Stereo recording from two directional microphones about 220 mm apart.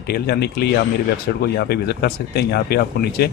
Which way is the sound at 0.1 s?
50° left (ahead or behind).